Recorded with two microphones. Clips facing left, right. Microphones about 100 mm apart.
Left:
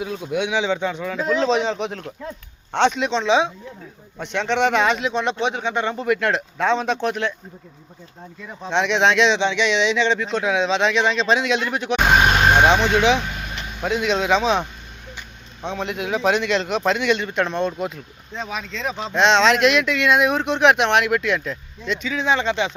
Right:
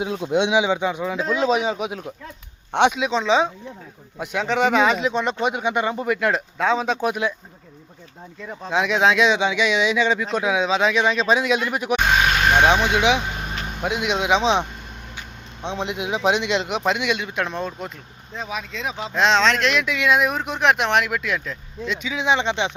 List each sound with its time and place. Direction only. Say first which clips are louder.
0.0 s a man's voice: right 3 dB; 20° right (ahead or behind)
8.4 s a man's voice: left 1 dB; 5° right (ahead or behind)
19.8 s speech: left 2 dB; 5° right (ahead or behind)
22.0 s speech: even; 15° right (ahead or behind)